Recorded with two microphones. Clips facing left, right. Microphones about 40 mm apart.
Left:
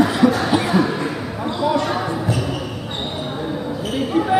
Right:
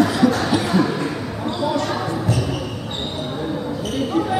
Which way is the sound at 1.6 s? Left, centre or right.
Centre.